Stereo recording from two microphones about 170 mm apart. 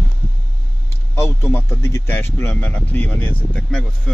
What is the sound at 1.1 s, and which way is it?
A man's voice, 15° left (ahead or behind).